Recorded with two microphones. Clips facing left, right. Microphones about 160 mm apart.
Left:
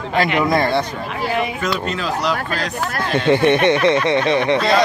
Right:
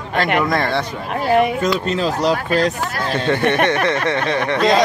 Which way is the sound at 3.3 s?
20° left (ahead or behind).